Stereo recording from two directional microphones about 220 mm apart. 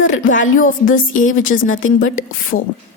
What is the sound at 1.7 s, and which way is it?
Speech, 65° left (ahead or behind).